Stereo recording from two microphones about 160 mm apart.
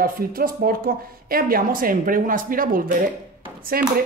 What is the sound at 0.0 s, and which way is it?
Speech, 65° right (ahead or behind).